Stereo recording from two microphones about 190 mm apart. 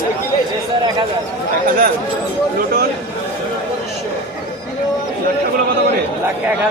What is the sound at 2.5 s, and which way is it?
Speech, 50° right (ahead or behind).